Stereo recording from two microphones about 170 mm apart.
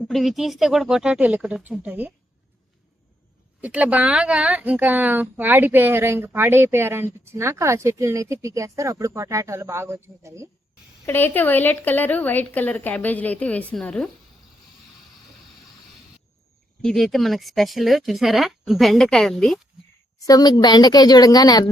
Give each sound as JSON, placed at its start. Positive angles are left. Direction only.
{"t": 0.1, "sound": "speech", "side_deg": 0}
{"t": 3.6, "sound": "speech", "side_deg": -10}
{"t": 11.0, "sound": "a woman's voice", "side_deg": 10}
{"t": 16.8, "sound": "speech", "side_deg": 0}
{"t": 20.1, "sound": "a woman's voice", "side_deg": 20}